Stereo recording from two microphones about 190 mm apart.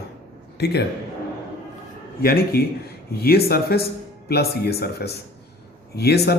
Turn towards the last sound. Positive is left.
turn(degrees=60)  # may be behind; listen again after turning